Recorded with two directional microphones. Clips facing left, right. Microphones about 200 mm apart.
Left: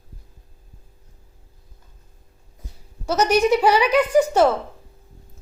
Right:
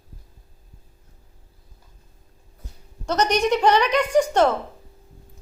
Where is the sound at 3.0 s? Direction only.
5° left (ahead or behind).